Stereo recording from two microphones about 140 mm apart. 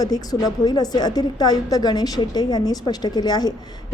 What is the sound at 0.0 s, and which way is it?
A woman's voice, 25° left (ahead or behind).